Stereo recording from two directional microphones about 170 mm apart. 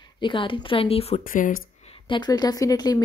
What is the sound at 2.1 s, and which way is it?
Speech, 25° left (ahead or behind).